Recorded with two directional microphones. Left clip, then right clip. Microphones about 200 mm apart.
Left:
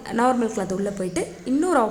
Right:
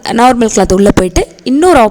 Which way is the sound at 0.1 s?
45° right (ahead or behind).